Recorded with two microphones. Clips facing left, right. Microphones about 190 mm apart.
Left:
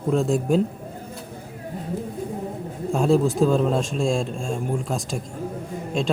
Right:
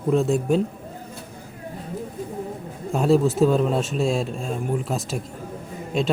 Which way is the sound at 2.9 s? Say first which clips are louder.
Right 1 dB; 5° right (ahead or behind).